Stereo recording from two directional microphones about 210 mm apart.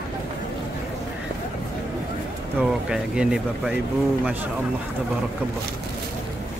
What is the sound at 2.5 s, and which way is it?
Speech, 5° right (ahead or behind).